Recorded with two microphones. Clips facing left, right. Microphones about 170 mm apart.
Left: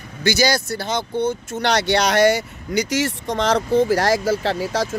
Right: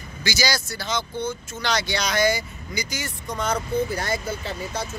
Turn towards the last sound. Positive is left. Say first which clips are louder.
# left 9 dB
turn(degrees=90)